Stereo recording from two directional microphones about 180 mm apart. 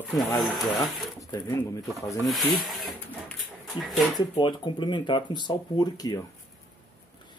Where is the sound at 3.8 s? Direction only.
Centre (ahead or behind).